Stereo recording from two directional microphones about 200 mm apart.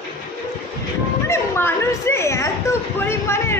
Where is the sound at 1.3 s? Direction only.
15° left (ahead or behind).